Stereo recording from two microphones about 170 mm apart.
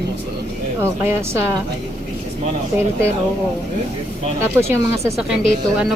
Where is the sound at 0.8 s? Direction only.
15° right (ahead or behind).